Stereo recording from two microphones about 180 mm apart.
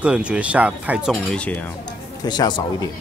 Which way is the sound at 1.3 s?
10° left (ahead or behind).